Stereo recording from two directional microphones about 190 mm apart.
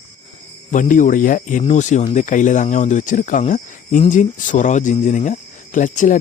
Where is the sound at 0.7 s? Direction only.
40° left (ahead or behind).